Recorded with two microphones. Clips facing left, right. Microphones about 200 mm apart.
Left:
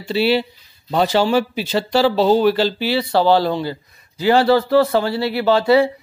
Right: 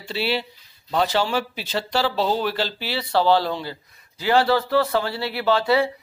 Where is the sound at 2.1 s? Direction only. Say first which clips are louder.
Left 9 dB; 35° left (ahead or behind).